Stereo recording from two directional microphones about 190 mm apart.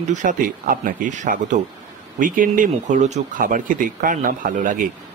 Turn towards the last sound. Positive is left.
turn(degrees=-45)  # may be behind; listen again after turning